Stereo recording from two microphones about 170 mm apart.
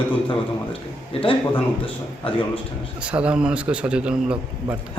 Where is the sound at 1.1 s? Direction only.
35° left (ahead or behind).